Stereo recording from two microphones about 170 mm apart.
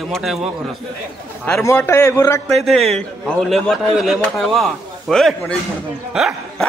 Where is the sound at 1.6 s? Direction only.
15° left (ahead or behind).